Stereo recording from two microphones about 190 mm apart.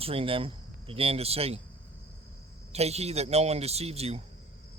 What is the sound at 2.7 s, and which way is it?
Speech, 35° right (ahead or behind).